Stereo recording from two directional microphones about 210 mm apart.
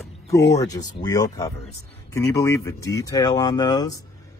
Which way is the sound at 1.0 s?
15° left (ahead or behind).